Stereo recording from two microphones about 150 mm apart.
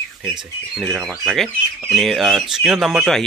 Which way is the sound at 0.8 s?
15° right (ahead or behind).